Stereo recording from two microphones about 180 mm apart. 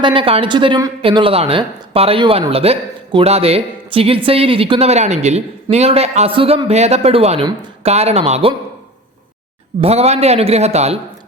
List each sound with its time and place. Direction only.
0.0 s a woman's voice: 30° right (ahead or behind)
9.8 s a woman's voice: 35° right (ahead or behind)